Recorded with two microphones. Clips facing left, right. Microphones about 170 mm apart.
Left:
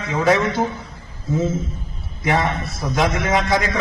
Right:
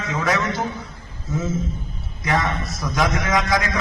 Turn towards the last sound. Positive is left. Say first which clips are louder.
# left 2 dB
turn(degrees=30)  # may be behind; listen again after turning